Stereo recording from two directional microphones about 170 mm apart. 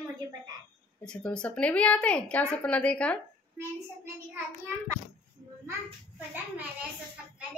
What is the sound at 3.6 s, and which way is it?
Speech, 15° right (ahead or behind).